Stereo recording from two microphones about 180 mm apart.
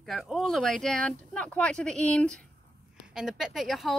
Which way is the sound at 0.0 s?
Centre (ahead or behind).